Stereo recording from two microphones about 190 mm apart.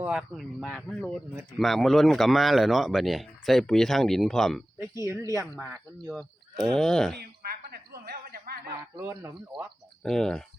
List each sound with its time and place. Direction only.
0.0 s speech: 5° right (ahead or behind)
5.0 s speech: 15° right (ahead or behind); by 7.2 s 5° left (ahead or behind)
7.7 s a sound: 55° right (ahead or behind)
9.0 s speech: 10° right (ahead or behind)
10.0 s speech: 5° left (ahead or behind)